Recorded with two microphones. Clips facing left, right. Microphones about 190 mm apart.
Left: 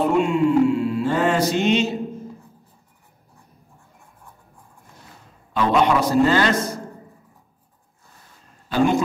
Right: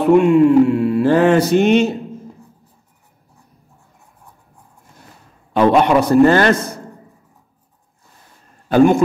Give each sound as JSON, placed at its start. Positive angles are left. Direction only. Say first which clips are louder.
{"t": 0.1, "sound": "music", "louder": "right 8 dB", "side_deg": -60}
{"t": 5.5, "sound": "a man's voice", "louder": "right 6 dB", "side_deg": -60}
{"t": 8.6, "sound": "a sound", "louder": "right 8 dB", "side_deg": -50}